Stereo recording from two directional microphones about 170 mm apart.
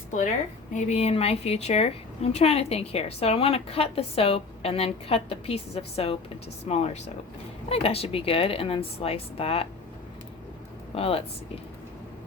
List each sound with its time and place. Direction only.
0.7 s a woman's voice: 40° left (ahead or behind)
10.9 s speech: 35° left (ahead or behind)